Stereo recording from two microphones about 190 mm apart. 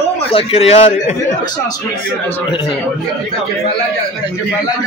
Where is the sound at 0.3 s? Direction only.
30° left (ahead or behind).